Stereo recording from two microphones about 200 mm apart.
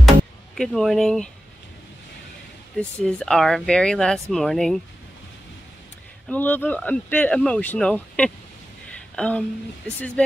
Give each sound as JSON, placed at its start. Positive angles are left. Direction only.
{"t": 0.6, "sound": "speech", "side_deg": 0}
{"t": 2.7, "sound": "speech", "side_deg": 5}
{"t": 6.2, "sound": "speech", "side_deg": 10}